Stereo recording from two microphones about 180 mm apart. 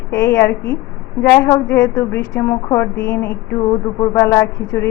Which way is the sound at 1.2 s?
10° left (ahead or behind).